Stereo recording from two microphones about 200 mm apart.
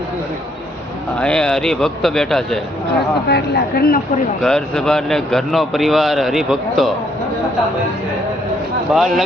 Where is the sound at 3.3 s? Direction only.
55° left (ahead or behind).